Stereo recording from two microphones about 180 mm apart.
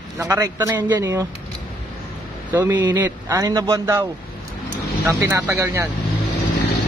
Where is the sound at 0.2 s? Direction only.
15° right (ahead or behind).